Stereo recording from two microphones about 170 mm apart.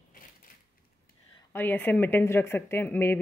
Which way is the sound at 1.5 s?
10° left (ahead or behind).